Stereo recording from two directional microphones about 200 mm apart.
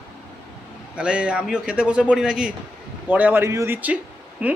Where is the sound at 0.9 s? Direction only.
5° right (ahead or behind).